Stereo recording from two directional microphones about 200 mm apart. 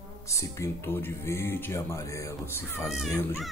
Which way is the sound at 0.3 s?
15° left (ahead or behind).